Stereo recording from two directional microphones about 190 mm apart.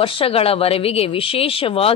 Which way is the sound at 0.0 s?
30° left (ahead or behind).